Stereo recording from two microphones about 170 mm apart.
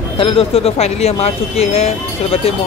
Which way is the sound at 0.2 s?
35° left (ahead or behind).